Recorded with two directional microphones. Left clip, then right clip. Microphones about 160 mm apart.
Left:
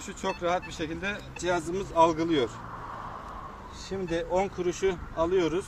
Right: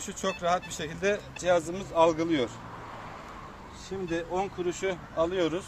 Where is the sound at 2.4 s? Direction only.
10° left (ahead or behind).